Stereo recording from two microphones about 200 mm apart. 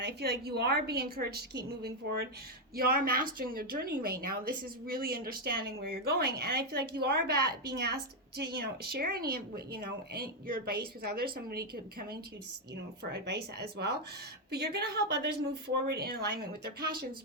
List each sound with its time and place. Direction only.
0.0 s a woman's voice: 55° right (ahead or behind)